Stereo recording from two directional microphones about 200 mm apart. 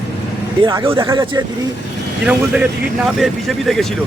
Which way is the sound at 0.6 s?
20° right (ahead or behind).